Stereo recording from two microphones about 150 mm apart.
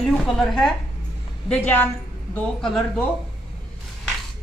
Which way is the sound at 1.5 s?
10° left (ahead or behind).